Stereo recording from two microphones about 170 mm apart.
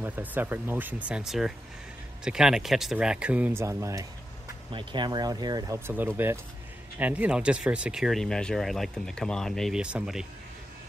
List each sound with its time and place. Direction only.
0.0 s speech: 10° right (ahead or behind)
5.9 s speech: 10° right (ahead or behind)